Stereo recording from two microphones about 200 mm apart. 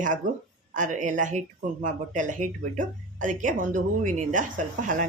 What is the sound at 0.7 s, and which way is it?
Speech, 40° right (ahead or behind).